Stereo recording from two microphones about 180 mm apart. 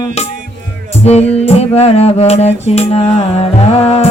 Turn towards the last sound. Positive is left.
turn(degrees=35)  # may be behind; listen again after turning